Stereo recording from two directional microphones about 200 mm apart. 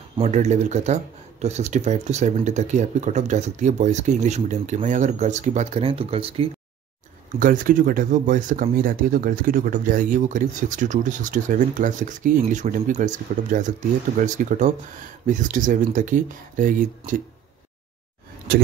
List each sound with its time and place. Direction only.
0.2 s speech: 35° right (ahead or behind)
7.3 s speech: 45° right (ahead or behind)